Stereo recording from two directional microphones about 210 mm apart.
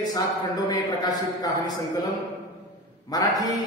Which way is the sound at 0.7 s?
15° left (ahead or behind).